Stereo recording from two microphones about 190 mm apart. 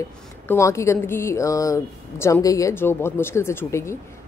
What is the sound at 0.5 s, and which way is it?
Speech, 15° left (ahead or behind).